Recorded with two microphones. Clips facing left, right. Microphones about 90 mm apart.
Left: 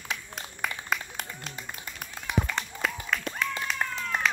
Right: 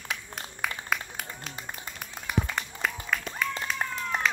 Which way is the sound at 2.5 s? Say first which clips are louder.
Even; 5° right (ahead or behind).